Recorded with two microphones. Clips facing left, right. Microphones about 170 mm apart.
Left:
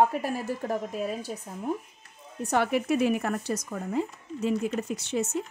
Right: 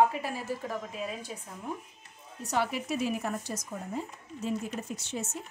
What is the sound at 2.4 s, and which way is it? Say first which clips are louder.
Speech: left 5 dB; 55° left (ahead or behind).